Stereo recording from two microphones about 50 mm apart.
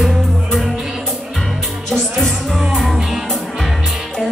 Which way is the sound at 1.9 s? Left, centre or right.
Centre.